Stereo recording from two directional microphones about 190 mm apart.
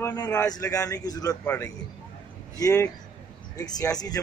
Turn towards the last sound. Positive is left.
turn(degrees=20)  # may be behind; listen again after turning